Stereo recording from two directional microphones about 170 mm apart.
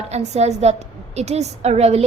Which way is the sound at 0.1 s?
40° right (ahead or behind).